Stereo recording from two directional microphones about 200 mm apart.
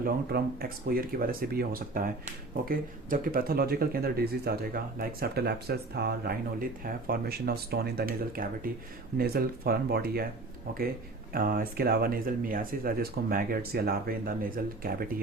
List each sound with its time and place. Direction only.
0.0 s speech: 50° right (ahead or behind)